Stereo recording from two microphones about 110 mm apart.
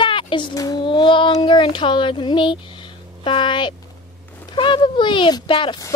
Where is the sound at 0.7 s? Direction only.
45° left (ahead or behind).